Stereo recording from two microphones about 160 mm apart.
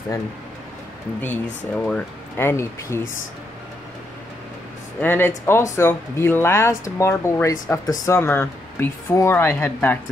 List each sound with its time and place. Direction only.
1.2 s speech: 10° left (ahead or behind)
5.0 s speech: 15° left (ahead or behind)